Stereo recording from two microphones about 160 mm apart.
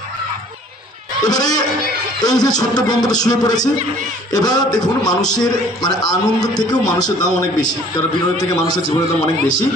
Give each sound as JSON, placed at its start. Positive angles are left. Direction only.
{"t": 1.2, "sound": "a man's voice", "side_deg": 25}
{"t": 8.4, "sound": "a man's voice", "side_deg": 25}